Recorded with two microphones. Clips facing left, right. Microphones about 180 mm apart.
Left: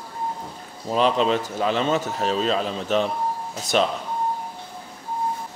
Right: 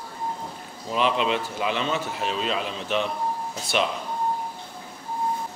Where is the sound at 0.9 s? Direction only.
40° left (ahead or behind).